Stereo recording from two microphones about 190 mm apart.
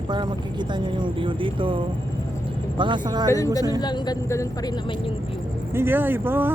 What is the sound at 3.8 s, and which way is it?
Speech, 20° left (ahead or behind).